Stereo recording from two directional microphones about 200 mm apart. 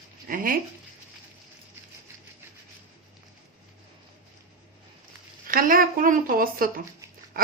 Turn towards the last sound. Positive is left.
turn(degrees=-45)  # may be behind; listen again after turning